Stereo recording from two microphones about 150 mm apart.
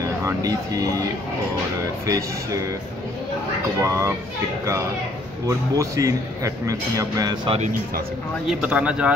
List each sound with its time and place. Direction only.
0.2 s a man's voice: 20° right (ahead or behind)
2.0 s a man's voice: 20° right (ahead or behind)
3.8 s a man's voice: 20° right (ahead or behind)
5.5 s a man's voice: 20° right (ahead or behind)
8.5 s speech: 5° right (ahead or behind)